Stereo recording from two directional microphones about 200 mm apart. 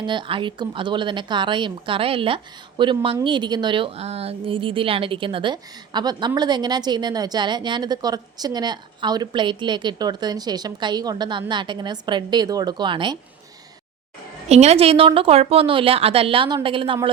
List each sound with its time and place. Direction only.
0.0 s speech: 25° right (ahead or behind)
14.5 s speech: 30° right (ahead or behind)